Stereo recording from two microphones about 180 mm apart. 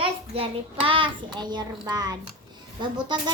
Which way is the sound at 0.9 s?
30° right (ahead or behind).